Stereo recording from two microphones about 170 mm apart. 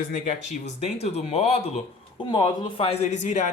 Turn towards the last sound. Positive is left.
turn(degrees=45)  # may be behind; listen again after turning